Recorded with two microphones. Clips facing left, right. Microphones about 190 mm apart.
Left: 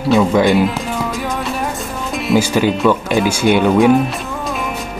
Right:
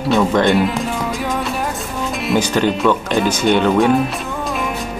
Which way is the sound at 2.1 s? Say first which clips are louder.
Left 3 dB; 5° left (ahead or behind).